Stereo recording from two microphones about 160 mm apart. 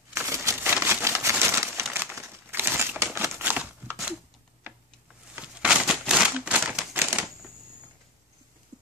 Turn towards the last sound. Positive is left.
turn(degrees=-15)  # may be behind; listen again after turning